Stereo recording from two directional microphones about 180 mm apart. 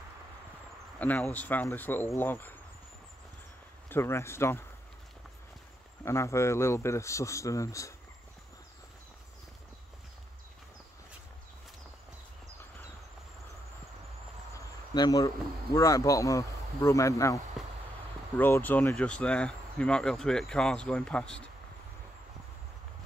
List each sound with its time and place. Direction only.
0.9 s speech: 10° left (ahead or behind)
3.9 s speech: 15° left (ahead or behind)
6.0 s speech: 15° left (ahead or behind)
14.5 s speech: 20° left (ahead or behind)
18.4 s speech: 10° left (ahead or behind)